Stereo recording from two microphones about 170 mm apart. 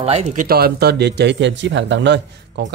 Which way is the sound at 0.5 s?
65° right (ahead or behind).